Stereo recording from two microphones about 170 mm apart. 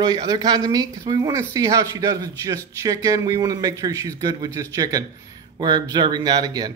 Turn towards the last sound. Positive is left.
turn(degrees=-25)  # may be behind; listen again after turning